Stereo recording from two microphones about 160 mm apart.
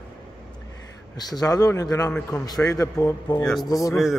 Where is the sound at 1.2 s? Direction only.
25° left (ahead or behind).